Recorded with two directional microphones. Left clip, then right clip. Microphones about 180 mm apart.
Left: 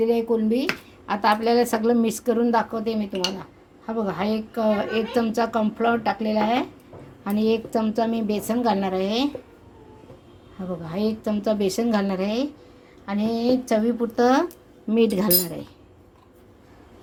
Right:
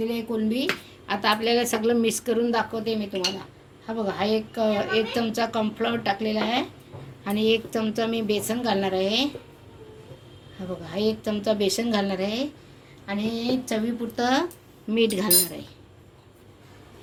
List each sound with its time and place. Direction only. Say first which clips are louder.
0.0 s speech: left 7 dB; 55° left (ahead or behind)
7.3 s speech: even; 40° left (ahead or behind)
10.8 s a woman's voice: right 1 dB; 45° left (ahead or behind)
14.8 s speech: left 2 dB; 40° left (ahead or behind)